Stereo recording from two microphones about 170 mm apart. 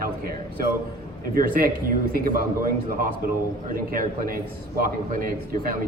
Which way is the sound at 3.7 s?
55° right (ahead or behind).